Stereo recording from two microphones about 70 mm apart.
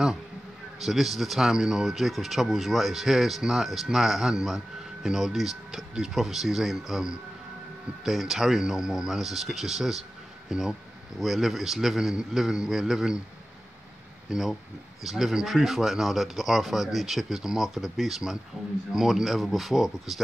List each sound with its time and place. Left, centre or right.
0.7 s speech: centre
14.3 s speech: centre